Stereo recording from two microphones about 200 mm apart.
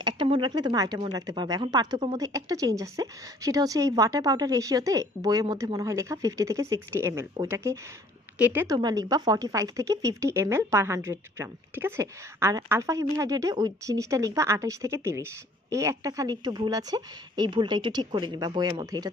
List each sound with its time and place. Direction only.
0.0 s speech: 25° right (ahead or behind)
8.7 s a woman's voice: 20° right (ahead or behind)